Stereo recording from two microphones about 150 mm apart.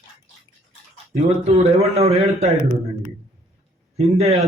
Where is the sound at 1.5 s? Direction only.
45° right (ahead or behind).